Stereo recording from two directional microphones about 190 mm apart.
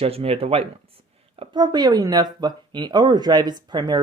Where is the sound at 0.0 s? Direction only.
30° right (ahead or behind).